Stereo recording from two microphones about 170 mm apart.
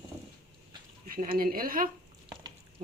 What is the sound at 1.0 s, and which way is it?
Speech, 55° right (ahead or behind).